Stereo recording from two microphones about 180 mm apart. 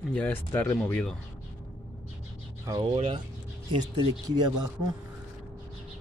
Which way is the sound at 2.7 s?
30° right (ahead or behind).